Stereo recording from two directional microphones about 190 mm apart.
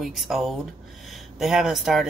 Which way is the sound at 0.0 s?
Centre (ahead or behind).